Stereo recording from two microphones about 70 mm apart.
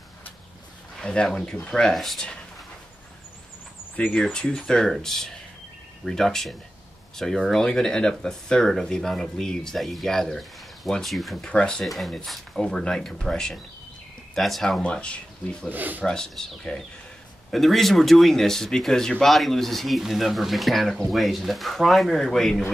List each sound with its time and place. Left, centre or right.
0.9 s speech: centre
3.9 s speech: centre
11.4 s speech: centre
11.8 s speech: centre
14.8 s speech: centre
15.7 s speech: right
16.0 s speech: centre